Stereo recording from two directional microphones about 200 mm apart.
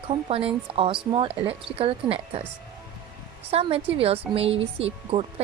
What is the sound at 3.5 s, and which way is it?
Speech, 30° right (ahead or behind).